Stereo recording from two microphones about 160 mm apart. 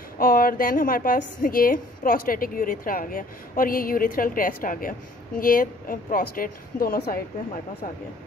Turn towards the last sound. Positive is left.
turn(degrees=80)